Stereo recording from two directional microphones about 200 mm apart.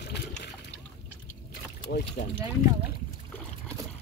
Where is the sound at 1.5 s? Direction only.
55° left (ahead or behind).